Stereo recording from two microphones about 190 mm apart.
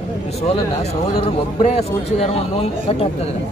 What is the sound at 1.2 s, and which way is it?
A man's voice, 35° left (ahead or behind).